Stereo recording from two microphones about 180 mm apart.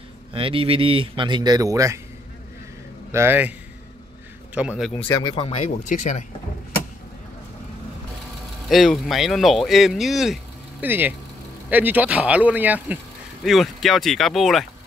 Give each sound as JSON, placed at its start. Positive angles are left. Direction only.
{"t": 0.3, "sound": "speech", "side_deg": -30}
{"t": 3.1, "sound": "speech", "side_deg": -15}
{"t": 4.6, "sound": "speech", "side_deg": -5}
{"t": 4.9, "sound": "speech", "side_deg": 10}
{"t": 5.2, "sound": "speech", "side_deg": 30}
{"t": 5.9, "sound": "speech", "side_deg": 45}
{"t": 8.6, "sound": "speech", "side_deg": 0}